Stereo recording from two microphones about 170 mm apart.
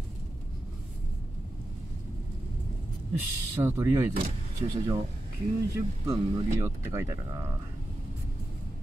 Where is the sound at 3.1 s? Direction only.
15° right (ahead or behind).